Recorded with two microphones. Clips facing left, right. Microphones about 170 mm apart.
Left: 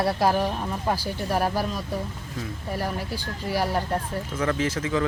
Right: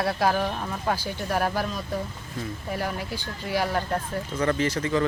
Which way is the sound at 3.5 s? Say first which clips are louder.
Even; 10° left (ahead or behind).